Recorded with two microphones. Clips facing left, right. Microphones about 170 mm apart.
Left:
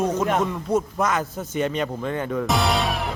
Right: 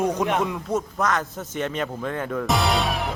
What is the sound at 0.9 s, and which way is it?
Speech, 5° left (ahead or behind).